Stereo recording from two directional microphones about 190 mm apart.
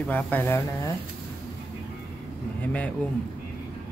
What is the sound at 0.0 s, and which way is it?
Speech, 10° left (ahead or behind).